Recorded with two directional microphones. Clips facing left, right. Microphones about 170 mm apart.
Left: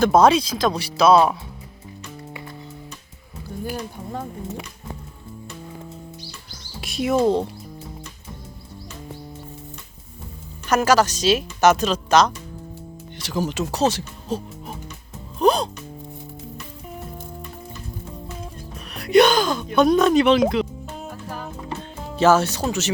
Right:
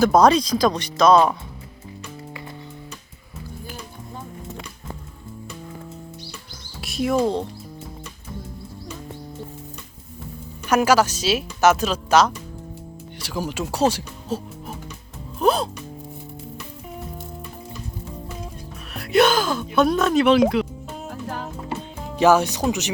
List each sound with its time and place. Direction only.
0.0 s speech: centre (ahead or behind)
6.8 s speech: centre (ahead or behind)
10.7 s speech: 10° right (ahead or behind)
15.4 s music: 5° right (ahead or behind)
18.9 s music: centre (ahead or behind)
21.7 s music: 10° right (ahead or behind)